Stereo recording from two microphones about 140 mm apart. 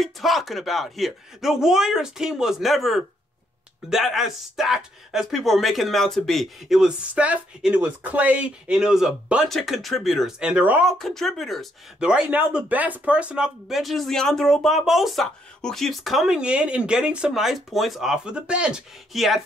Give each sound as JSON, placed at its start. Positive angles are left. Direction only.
{"t": 0.0, "sound": "speech", "side_deg": 0}
{"t": 10.9, "sound": "speech", "side_deg": 0}